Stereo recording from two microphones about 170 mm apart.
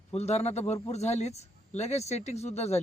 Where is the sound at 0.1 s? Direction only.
40° left (ahead or behind).